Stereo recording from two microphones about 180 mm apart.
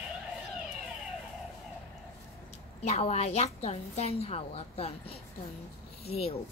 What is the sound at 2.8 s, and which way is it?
A woman's voice, 35° left (ahead or behind).